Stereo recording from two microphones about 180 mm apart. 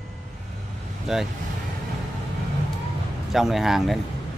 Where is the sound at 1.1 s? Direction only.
Centre (ahead or behind).